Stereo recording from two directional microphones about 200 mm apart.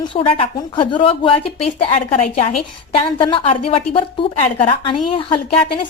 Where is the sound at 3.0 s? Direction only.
25° left (ahead or behind).